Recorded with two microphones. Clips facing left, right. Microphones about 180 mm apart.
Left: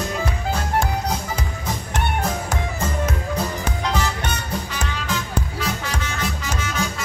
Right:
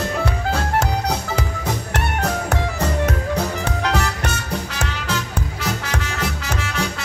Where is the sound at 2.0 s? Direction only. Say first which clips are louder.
Even; 70° right (ahead or behind).